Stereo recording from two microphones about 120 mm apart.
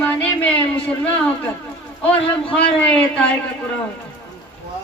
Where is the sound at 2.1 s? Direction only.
10° left (ahead or behind).